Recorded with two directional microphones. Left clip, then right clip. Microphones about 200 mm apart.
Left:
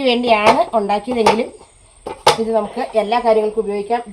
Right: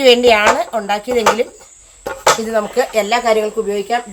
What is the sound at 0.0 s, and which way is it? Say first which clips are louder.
Speech: right 4 dB; 50° right (ahead or behind).